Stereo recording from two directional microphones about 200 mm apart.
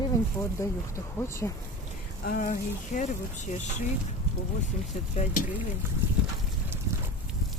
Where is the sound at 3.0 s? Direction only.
40° left (ahead or behind).